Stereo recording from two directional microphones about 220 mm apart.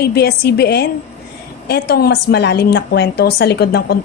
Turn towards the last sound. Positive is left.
turn(degrees=45)  # may be behind; listen again after turning